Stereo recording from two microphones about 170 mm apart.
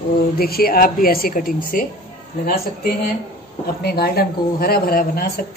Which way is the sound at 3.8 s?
65° left (ahead or behind).